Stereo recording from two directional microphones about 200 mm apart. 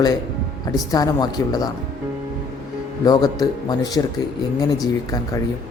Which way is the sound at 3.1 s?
20° left (ahead or behind).